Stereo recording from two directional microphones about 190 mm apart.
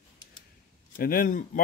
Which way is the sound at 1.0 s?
50° left (ahead or behind).